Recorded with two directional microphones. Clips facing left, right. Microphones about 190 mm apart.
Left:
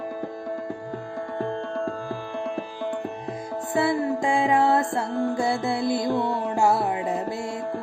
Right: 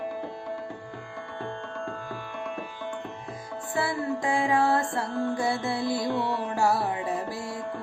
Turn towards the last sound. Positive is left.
turn(degrees=20)  # may be behind; listen again after turning